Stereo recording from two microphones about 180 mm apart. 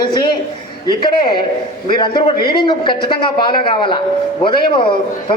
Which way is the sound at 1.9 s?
25° left (ahead or behind).